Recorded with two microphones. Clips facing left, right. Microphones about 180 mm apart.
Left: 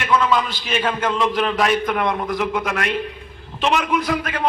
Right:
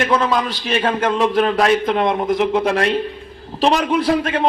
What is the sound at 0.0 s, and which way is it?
A man's voice, 35° right (ahead or behind).